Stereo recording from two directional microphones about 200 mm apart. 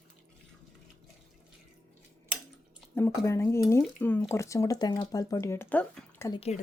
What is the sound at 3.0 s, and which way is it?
Speech, 15° left (ahead or behind).